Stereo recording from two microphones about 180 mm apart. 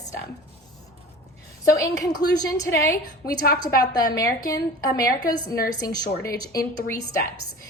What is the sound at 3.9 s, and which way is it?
A woman's voice, 20° left (ahead or behind).